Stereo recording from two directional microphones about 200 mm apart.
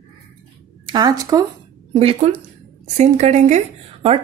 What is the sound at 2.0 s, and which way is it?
A woman's voice, 30° right (ahead or behind).